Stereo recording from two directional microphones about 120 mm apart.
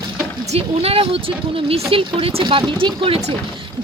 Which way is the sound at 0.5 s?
55° right (ahead or behind).